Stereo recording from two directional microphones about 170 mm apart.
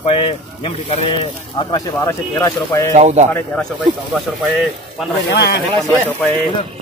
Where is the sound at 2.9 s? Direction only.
45° right (ahead or behind).